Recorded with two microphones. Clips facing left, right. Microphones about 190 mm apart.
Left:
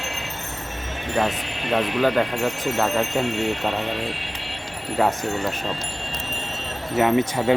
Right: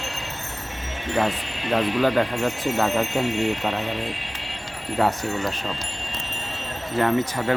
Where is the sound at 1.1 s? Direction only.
5° left (ahead or behind).